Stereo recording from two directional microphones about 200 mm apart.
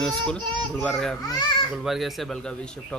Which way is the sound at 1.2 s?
20° left (ahead or behind).